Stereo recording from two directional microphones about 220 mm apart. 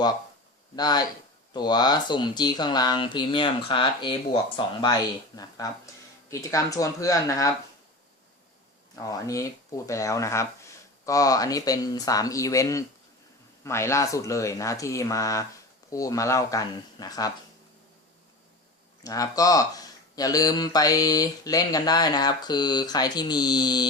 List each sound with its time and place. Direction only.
0.8 s speech: 20° left (ahead or behind)
9.0 s speech: 15° left (ahead or behind)
19.0 s speech: 15° left (ahead or behind)